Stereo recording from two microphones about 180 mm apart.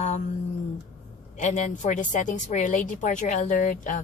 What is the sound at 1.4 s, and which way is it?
A woman's voice, 40° left (ahead or behind).